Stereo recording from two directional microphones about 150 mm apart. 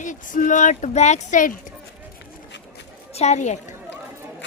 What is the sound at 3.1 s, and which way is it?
Speech, 50° left (ahead or behind).